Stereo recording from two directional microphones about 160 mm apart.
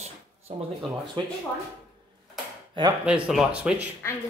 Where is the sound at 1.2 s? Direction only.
30° right (ahead or behind).